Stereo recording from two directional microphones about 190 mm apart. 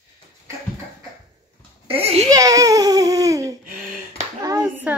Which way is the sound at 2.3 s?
15° right (ahead or behind).